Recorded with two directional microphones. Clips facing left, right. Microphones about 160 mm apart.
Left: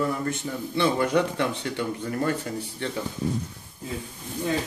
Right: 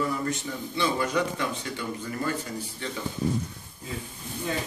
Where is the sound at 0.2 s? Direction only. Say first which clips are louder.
Left 2 dB; 55° left (ahead or behind).